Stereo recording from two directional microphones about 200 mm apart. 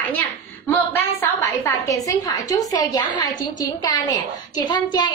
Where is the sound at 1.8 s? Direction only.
15° left (ahead or behind).